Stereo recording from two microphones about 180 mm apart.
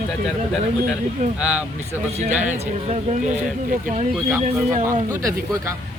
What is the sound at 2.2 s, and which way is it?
A man's voice, 40° right (ahead or behind).